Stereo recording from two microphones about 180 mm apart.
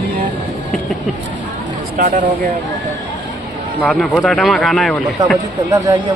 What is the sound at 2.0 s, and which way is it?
Speech, 50° right (ahead or behind).